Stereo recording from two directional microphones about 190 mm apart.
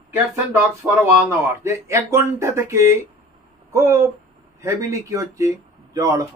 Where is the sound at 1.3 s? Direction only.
15° right (ahead or behind).